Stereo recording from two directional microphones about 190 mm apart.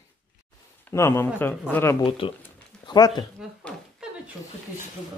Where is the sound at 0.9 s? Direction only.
15° left (ahead or behind).